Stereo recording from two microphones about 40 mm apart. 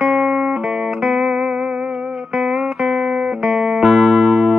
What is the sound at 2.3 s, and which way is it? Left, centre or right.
Music, centre.